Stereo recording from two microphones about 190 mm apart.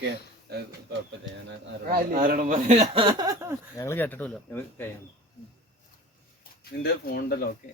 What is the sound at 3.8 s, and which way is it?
Speech, 10° left (ahead or behind).